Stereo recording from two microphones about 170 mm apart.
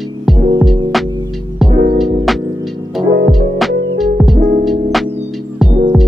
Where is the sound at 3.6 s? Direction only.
Centre (ahead or behind).